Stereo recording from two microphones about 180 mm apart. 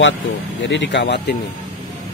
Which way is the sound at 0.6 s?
85° left.